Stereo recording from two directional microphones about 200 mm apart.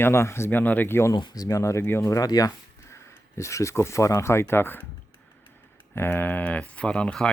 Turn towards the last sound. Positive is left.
turn(degrees=5)  # may be behind; listen again after turning